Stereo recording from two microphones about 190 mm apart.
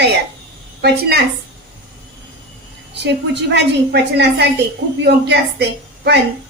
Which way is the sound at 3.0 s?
65° right (ahead or behind).